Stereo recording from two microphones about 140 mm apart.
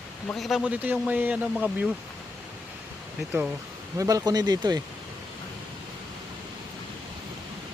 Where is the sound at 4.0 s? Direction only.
25° right (ahead or behind).